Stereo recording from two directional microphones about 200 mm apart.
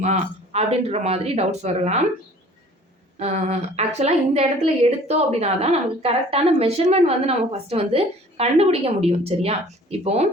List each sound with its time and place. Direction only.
0.0 s a woman's voice: 35° right (ahead or behind)
3.2 s a woman's voice: 35° right (ahead or behind)